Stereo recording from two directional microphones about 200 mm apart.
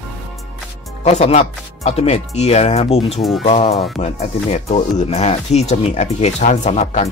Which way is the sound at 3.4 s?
30° left (ahead or behind).